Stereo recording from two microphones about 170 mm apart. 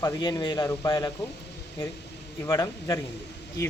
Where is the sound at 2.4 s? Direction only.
15° left (ahead or behind).